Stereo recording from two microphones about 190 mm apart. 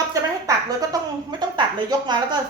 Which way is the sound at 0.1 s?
15° right (ahead or behind).